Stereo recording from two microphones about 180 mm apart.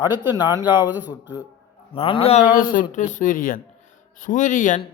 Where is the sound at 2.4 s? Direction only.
50° left (ahead or behind).